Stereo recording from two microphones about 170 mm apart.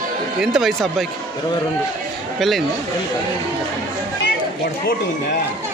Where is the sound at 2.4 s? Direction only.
Centre (ahead or behind).